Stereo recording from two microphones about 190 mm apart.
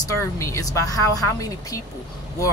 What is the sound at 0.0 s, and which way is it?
Speech, 15° left (ahead or behind).